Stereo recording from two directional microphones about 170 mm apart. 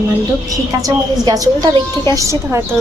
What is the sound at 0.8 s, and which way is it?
A woman's voice, 20° right (ahead or behind).